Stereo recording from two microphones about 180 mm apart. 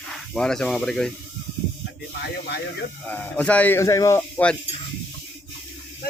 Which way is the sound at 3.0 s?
10° left (ahead or behind).